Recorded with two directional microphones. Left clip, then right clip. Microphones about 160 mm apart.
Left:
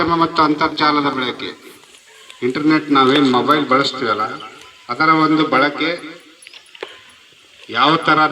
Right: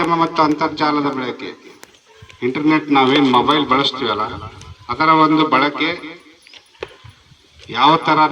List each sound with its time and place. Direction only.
0.0 s a man's voice: 30° right (ahead or behind)
7.7 s a man's voice: 35° right (ahead or behind)